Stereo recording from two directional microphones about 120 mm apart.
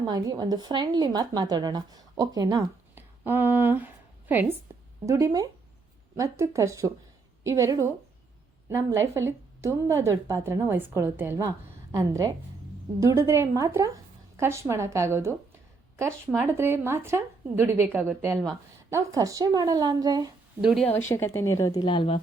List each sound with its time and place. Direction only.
0.1 s a woman's voice: 35° right (ahead or behind)
2.9 s a sound: 15° right (ahead or behind)
5.0 s a woman's voice: 30° right (ahead or behind)
20.6 s a woman's voice: 5° right (ahead or behind)
21.1 s a woman's voice: 20° left (ahead or behind)
21.8 s speech: 45° left (ahead or behind)